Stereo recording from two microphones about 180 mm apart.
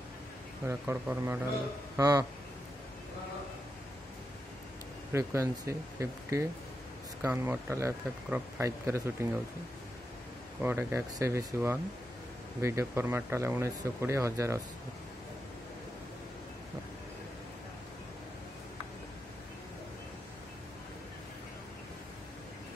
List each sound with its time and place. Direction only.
0.7 s speech: 15° right (ahead or behind)
5.1 s speech: 15° right (ahead or behind)
10.6 s speech: 10° right (ahead or behind)